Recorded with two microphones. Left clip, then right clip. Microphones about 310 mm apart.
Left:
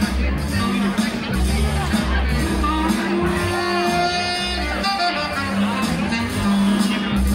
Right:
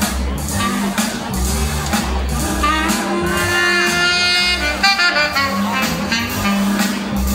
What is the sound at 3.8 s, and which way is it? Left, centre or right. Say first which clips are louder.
Music: right 5 dB; right.